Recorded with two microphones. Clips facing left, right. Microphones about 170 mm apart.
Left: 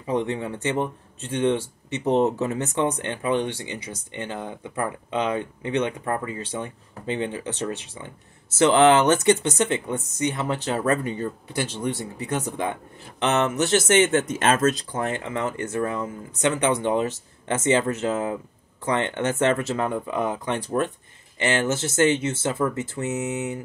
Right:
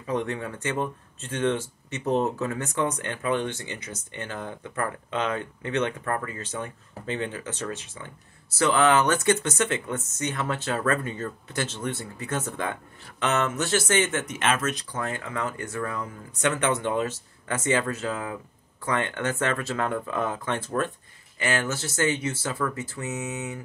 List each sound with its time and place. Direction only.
0.0 s speech: 20° left (ahead or behind)
14.4 s speech: 40° left (ahead or behind)